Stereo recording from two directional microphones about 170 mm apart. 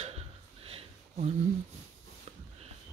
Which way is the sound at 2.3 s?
40° right (ahead or behind).